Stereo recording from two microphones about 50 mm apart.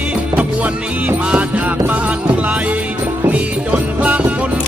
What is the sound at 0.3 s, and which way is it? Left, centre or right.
Music, right.